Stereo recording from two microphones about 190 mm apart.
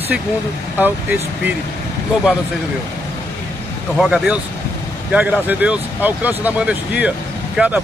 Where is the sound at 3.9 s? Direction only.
5° right (ahead or behind).